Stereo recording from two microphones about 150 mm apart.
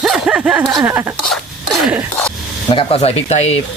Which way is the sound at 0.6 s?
15° right (ahead or behind).